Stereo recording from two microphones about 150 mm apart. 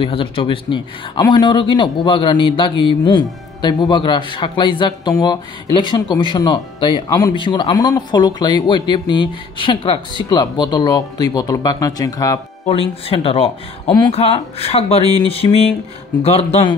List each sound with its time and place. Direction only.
0.0 s speech: 35° left (ahead or behind)
12.6 s speech: 40° left (ahead or behind)